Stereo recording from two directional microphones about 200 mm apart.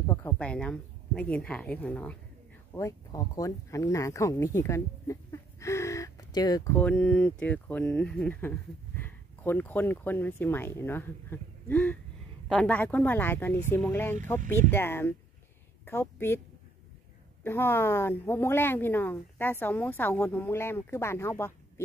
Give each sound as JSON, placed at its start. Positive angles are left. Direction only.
{"t": 0.0, "sound": "a woman's voice", "side_deg": 15}
{"t": 2.7, "sound": "speech", "side_deg": 15}
{"t": 6.8, "sound": "a woman's voice", "side_deg": 5}
{"t": 17.4, "sound": "speech", "side_deg": 10}